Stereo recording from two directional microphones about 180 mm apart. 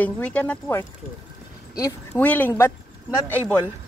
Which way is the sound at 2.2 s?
10° left (ahead or behind).